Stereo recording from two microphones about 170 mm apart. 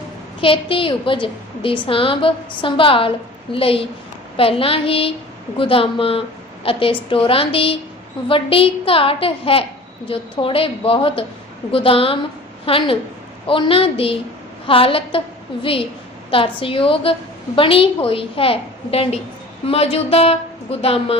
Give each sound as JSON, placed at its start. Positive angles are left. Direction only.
{"t": 0.4, "sound": "a woman's voice", "side_deg": 30}